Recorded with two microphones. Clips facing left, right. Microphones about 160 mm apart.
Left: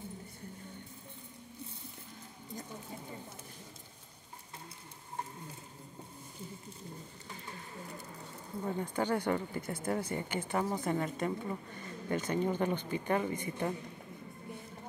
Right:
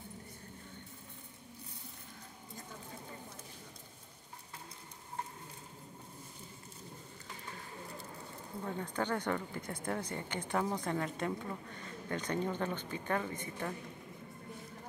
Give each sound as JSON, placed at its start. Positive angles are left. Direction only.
{"t": 8.6, "sound": "speech", "side_deg": 10}